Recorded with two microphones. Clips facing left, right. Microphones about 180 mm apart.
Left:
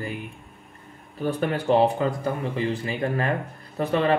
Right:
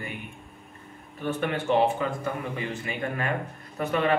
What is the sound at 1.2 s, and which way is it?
A man's voice, 35° left (ahead or behind).